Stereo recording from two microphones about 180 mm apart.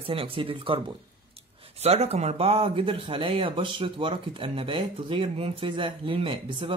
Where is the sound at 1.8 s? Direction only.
35° right (ahead or behind).